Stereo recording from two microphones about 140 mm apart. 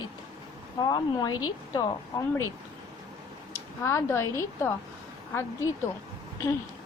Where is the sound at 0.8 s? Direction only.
30° left (ahead or behind).